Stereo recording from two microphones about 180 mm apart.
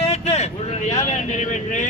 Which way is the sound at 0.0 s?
35° left (ahead or behind).